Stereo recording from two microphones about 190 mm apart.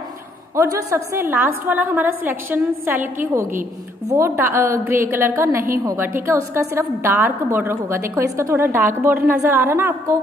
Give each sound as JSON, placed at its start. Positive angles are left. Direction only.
{"t": 0.6, "sound": "a woman's voice", "side_deg": -15}
{"t": 4.1, "sound": "a woman's voice", "side_deg": -15}